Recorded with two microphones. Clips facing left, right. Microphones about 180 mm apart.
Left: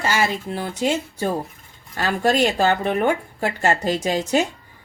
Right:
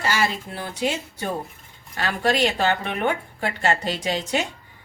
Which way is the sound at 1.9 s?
45° left (ahead or behind).